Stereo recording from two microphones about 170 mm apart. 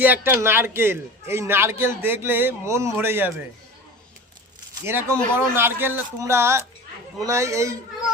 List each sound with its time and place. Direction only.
0.0 s a man's voice: 10° right (ahead or behind)
4.9 s a man's voice: 15° right (ahead or behind)